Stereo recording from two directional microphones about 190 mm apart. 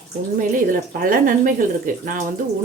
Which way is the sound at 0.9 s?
45° right (ahead or behind).